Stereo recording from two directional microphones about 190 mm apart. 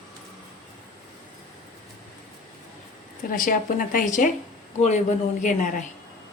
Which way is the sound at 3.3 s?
45° left (ahead or behind).